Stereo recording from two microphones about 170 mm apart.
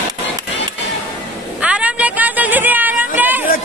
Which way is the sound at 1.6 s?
5° right (ahead or behind).